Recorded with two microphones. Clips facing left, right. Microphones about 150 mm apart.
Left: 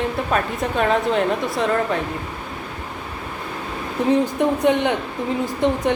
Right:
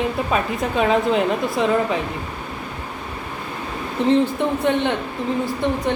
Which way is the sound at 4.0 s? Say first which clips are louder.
Even; 10° left (ahead or behind).